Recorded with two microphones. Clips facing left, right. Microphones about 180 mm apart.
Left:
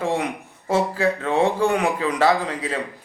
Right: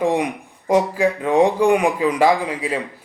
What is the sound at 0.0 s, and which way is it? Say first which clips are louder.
A man's voice: right 4 dB; 15° right (ahead or behind).